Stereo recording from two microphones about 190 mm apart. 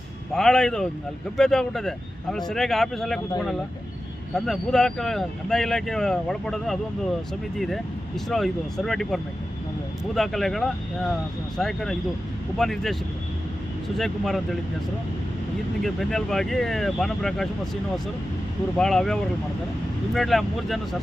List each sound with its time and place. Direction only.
0.3 s speech: 5° left (ahead or behind)
8.3 s speech: centre (ahead or behind)
15.8 s speech: centre (ahead or behind)
18.8 s speech: 5° left (ahead or behind)